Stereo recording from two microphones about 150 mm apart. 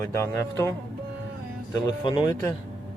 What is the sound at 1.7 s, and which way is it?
Speech, 30° left (ahead or behind).